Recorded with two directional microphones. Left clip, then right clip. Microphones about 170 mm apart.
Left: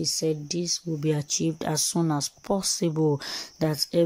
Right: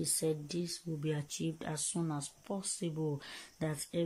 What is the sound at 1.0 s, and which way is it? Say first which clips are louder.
Speech: left 10 dB; 25° left (ahead or behind).